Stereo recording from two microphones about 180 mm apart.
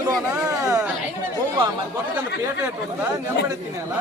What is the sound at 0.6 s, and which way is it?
Speech, 20° right (ahead or behind).